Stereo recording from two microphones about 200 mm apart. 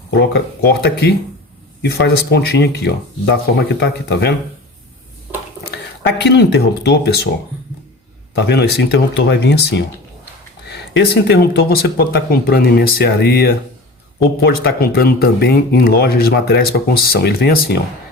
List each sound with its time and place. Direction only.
0.1 s speech: 60° left (ahead or behind)
5.7 s speech: 55° left (ahead or behind)
8.4 s speech: 55° left (ahead or behind)